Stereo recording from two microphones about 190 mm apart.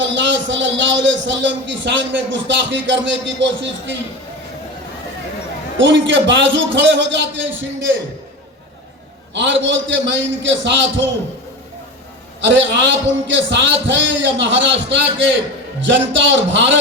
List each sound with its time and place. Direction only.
0.0 s a man's voice: 70° right (ahead or behind)
5.7 s a man's voice: 75° right (ahead or behind)
9.3 s a man's voice: 70° right (ahead or behind)
12.4 s a man's voice: 70° right (ahead or behind)